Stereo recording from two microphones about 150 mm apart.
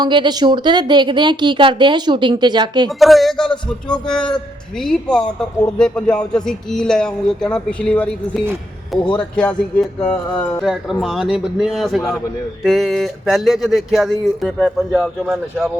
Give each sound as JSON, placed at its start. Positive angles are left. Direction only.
{"t": 0.0, "sound": "a woman's voice", "side_deg": -30}
{"t": 3.0, "sound": "speech", "side_deg": 0}